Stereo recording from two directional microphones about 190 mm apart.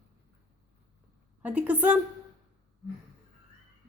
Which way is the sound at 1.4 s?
5° right (ahead or behind).